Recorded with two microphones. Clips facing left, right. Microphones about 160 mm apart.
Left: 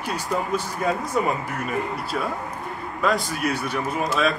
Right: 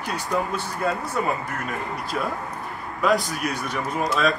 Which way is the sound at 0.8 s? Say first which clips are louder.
Right 1 dB; 10° left (ahead or behind).